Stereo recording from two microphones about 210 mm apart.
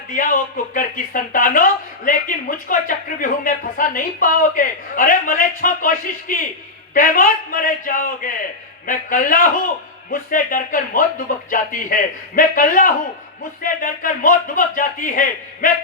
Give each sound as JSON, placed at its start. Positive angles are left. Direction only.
{"t": 0.1, "sound": "speech", "side_deg": 40}